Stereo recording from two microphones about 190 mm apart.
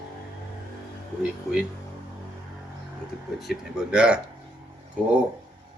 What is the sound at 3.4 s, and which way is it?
Speech, centre (ahead or behind).